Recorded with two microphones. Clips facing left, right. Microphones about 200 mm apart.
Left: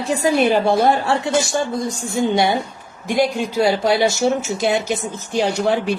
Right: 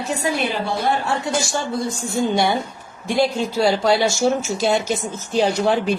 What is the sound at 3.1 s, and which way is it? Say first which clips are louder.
A woman's voice: left 1 dB; 15° left (ahead or behind).